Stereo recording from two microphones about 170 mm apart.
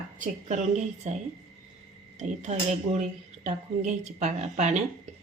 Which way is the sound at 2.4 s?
45° right (ahead or behind).